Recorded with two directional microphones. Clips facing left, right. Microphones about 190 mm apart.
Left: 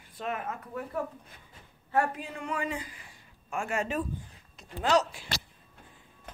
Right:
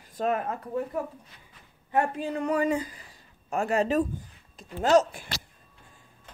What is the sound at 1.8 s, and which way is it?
A man's voice, 20° right (ahead or behind).